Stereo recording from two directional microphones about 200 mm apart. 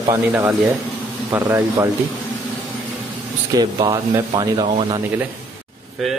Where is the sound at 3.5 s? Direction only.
20° right (ahead or behind).